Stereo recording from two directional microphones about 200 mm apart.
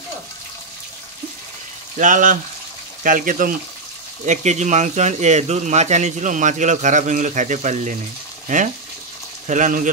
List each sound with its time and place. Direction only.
2.0 s speech: 40° right (ahead or behind)
9.5 s speech: 40° right (ahead or behind)